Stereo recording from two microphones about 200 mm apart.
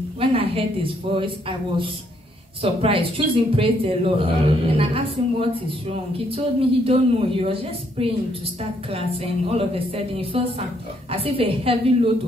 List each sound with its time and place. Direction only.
0.2 s speech: 30° right (ahead or behind)
2.6 s speech: 30° right (ahead or behind)